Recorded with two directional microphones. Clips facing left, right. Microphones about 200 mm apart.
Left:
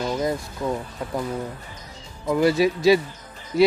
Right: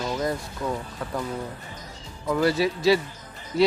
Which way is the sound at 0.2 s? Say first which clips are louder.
Left 2 dB; 15° left (ahead or behind).